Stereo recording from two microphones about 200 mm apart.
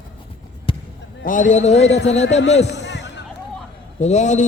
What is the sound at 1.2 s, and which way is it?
Speech, 40° left (ahead or behind).